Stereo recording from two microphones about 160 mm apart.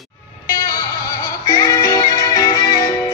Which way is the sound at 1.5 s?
20° left (ahead or behind).